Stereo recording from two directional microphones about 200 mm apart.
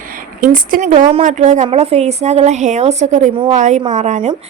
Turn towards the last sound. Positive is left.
turn(degrees=-35)  # may be behind; listen again after turning